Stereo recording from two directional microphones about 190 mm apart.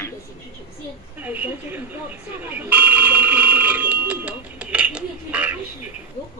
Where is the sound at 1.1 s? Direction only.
10° right (ahead or behind).